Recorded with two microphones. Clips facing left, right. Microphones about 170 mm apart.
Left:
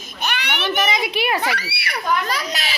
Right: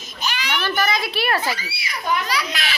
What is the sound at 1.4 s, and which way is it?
Speech, 70° left (ahead or behind).